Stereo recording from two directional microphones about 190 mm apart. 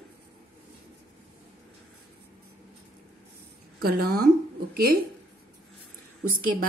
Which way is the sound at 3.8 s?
50° right (ahead or behind).